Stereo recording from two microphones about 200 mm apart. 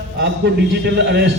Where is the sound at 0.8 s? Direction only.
55° right (ahead or behind).